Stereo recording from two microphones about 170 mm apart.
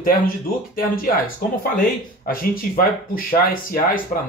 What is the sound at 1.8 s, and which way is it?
Speech, 60° left (ahead or behind).